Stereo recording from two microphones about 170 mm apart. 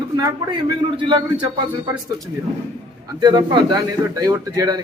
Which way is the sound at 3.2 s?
25° right (ahead or behind).